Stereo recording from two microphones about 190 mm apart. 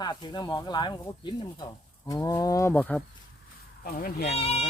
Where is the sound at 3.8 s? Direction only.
50° left (ahead or behind).